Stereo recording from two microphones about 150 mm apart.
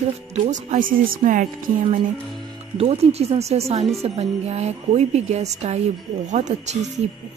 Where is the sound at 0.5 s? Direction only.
60° right (ahead or behind).